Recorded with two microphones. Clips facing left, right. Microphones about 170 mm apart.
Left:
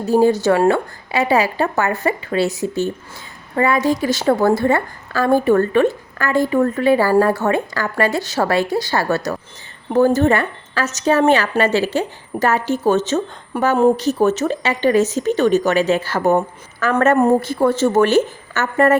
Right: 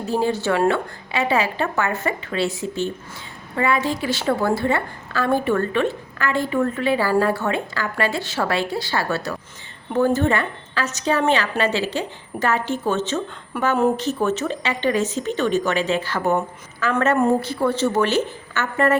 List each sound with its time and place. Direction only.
0.1 s a woman's voice: 40° left (ahead or behind)